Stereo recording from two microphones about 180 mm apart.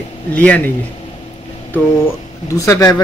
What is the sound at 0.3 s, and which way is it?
Speech, 10° left (ahead or behind).